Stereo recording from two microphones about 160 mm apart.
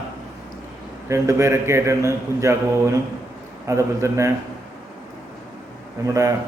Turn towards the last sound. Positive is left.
turn(degrees=-20)  # may be behind; listen again after turning